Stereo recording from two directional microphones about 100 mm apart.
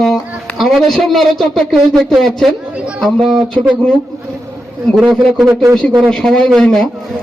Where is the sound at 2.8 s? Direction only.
10° right (ahead or behind).